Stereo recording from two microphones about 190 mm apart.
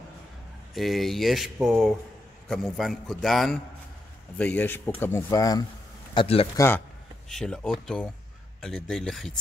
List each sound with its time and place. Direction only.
0.7 s speech: centre (ahead or behind); by 5.7 s 20° left (ahead or behind)
6.1 s speech: 30° left (ahead or behind)
6.5 s speech: 15° left (ahead or behind)
7.2 s speech: 5° left (ahead or behind)